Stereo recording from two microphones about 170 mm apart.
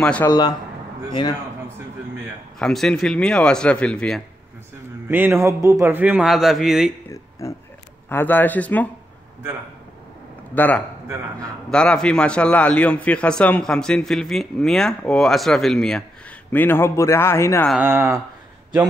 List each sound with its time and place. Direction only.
0.0 s speech: 5° left (ahead or behind)
0.3 s speech: 25° left (ahead or behind)
2.6 s a man's voice: 5° left (ahead or behind)
5.0 s a man's voice: 10° right (ahead or behind)
7.1 s a sound: 15° left (ahead or behind)
8.1 s speech: 10° left (ahead or behind)
10.5 s a man's voice: 10° left (ahead or behind)
17.7 s a man's voice: 10° right (ahead or behind)